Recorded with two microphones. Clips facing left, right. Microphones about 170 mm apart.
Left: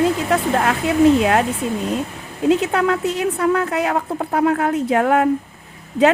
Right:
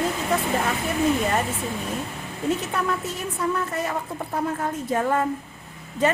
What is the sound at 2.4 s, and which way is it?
A woman's voice, 70° left (ahead or behind).